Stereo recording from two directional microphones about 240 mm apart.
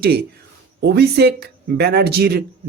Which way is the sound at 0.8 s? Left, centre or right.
Right.